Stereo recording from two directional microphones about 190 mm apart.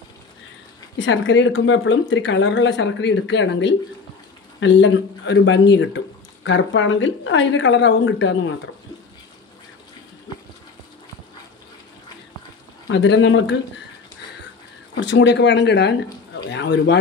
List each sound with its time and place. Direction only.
0.9 s speech: 75° left (ahead or behind)
12.8 s speech: 75° left (ahead or behind)
15.0 s speech: 70° left (ahead or behind)